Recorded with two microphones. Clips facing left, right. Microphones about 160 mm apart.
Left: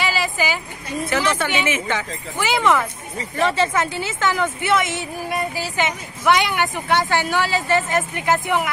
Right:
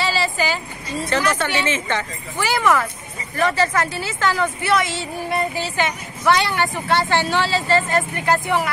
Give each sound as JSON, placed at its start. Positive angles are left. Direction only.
{"t": 0.1, "sound": "a sound", "side_deg": 15}
{"t": 0.9, "sound": "speech", "side_deg": 10}
{"t": 2.5, "sound": "speech", "side_deg": 20}